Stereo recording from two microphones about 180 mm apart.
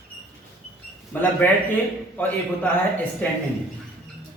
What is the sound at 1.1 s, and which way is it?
A man's voice, 10° left (ahead or behind).